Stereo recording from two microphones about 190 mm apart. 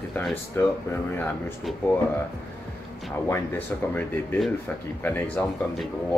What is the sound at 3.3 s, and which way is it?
Speech, 10° left (ahead or behind).